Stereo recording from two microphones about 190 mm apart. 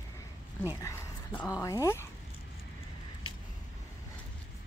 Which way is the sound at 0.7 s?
15° left (ahead or behind).